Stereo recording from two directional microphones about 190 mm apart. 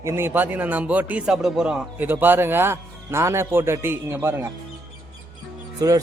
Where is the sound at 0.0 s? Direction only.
15° right (ahead or behind).